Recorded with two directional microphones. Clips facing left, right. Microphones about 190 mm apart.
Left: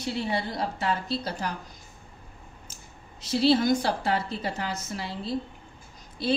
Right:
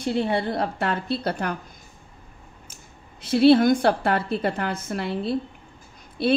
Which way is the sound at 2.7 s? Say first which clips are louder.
Right 1 dB; 55° right (ahead or behind).